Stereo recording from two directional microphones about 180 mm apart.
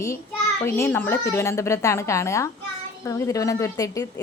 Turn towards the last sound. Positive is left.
turn(degrees=20)  # may be behind; listen again after turning